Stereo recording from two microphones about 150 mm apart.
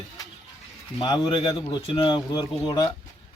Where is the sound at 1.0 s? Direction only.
30° left (ahead or behind).